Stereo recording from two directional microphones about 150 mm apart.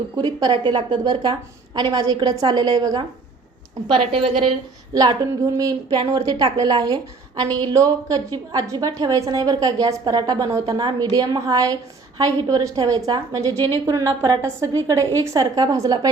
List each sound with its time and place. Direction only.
0.2 s a woman's voice: 30° right (ahead or behind)
5.5 s a woman's voice: 25° right (ahead or behind)